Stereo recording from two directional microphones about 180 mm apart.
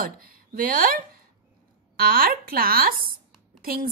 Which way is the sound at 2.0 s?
55° right (ahead or behind).